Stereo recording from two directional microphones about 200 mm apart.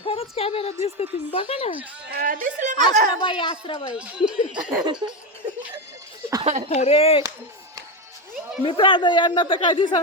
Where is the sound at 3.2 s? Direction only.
25° left (ahead or behind).